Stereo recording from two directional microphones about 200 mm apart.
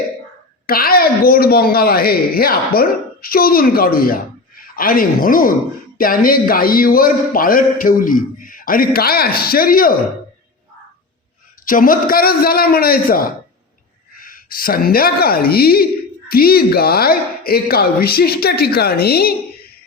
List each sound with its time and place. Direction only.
0.7 s a woman's voice: 45° left (ahead or behind)
11.6 s a woman's voice: 45° left (ahead or behind)